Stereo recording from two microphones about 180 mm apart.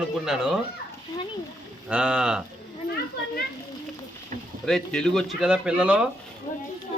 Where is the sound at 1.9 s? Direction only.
5° right (ahead or behind).